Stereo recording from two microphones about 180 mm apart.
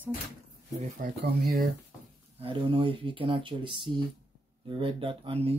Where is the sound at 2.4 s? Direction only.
30° right (ahead or behind).